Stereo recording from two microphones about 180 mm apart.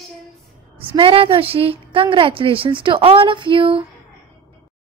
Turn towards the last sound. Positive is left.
turn(degrees=-30)  # may be behind; listen again after turning